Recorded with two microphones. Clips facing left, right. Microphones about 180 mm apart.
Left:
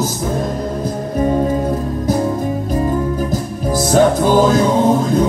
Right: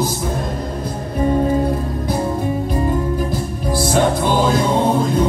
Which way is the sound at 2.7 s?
40° left (ahead or behind).